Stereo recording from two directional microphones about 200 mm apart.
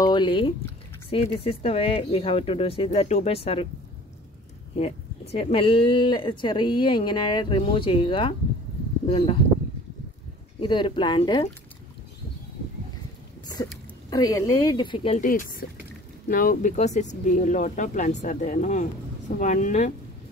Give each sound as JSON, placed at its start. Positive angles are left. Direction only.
{"t": 0.0, "sound": "speech", "side_deg": 25}
{"t": 4.7, "sound": "speech", "side_deg": 30}
{"t": 10.6, "sound": "speech", "side_deg": 25}
{"t": 14.1, "sound": "speech", "side_deg": 20}
{"t": 15.1, "sound": "speech", "side_deg": 40}